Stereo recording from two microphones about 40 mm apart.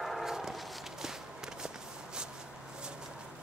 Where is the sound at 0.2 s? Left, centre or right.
Centre.